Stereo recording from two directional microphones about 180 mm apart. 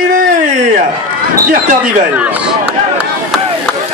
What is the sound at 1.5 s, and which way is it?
Speech, 45° right (ahead or behind).